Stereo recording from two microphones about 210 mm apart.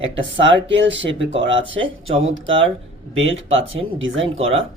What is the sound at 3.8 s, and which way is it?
Speech, 65° right (ahead or behind).